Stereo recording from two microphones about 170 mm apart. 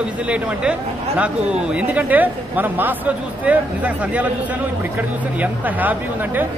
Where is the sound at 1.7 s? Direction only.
10° right (ahead or behind).